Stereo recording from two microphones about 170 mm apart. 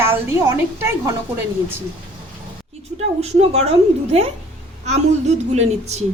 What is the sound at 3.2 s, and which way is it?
A woman's voice, 40° right (ahead or behind).